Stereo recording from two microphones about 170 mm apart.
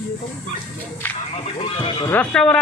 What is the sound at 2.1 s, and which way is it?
Speech, 5° left (ahead or behind).